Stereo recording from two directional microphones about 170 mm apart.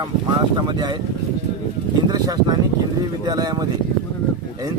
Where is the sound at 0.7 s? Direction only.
25° right (ahead or behind).